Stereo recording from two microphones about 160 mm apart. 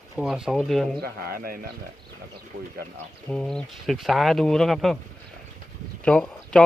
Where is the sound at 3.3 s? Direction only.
5° left (ahead or behind).